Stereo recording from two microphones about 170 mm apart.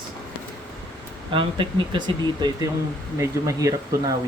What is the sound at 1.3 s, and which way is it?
Speech, 30° right (ahead or behind).